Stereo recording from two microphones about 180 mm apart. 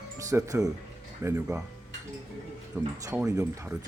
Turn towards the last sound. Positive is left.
turn(degrees=-15)  # may be behind; listen again after turning